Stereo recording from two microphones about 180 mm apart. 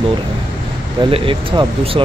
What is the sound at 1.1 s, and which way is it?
Speech, 30° right (ahead or behind).